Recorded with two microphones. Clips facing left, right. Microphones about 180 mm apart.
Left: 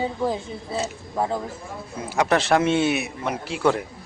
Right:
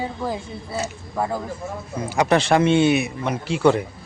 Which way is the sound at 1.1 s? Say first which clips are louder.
Even; centre (ahead or behind).